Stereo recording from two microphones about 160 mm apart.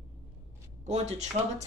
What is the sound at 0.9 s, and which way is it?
Speech, 45° right (ahead or behind).